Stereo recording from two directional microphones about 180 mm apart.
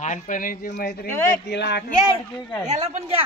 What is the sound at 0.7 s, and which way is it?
Speech, 70° left (ahead or behind).